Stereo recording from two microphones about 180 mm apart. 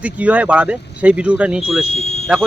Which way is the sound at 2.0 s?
35° left (ahead or behind).